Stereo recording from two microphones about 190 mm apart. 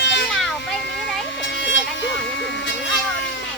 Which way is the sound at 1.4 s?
75° left (ahead or behind).